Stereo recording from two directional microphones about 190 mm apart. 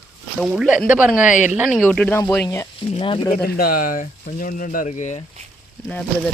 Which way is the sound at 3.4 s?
55° left (ahead or behind).